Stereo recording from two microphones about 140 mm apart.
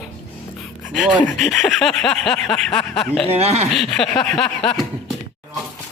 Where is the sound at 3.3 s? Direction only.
50° right (ahead or behind).